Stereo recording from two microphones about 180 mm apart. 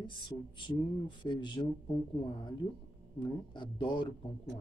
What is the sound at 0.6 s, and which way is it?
Speech, 25° left (ahead or behind).